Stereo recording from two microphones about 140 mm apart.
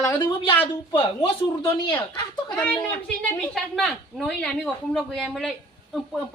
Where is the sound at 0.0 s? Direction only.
15° left (ahead or behind).